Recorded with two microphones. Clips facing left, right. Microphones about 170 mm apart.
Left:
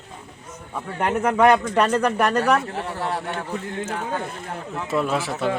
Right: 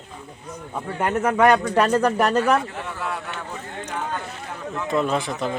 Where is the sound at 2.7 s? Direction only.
35° left (ahead or behind).